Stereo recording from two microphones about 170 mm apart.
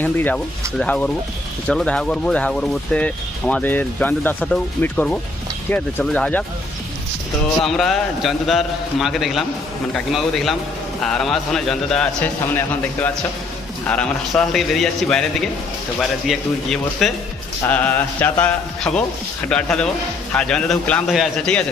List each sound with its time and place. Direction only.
0.0 s speech: 10° left (ahead or behind)
7.6 s a man's voice: centre (ahead or behind)